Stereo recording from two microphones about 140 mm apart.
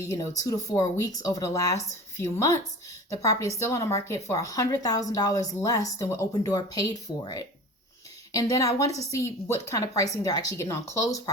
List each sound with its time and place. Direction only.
0.0 s a woman's voice: 25° left (ahead or behind)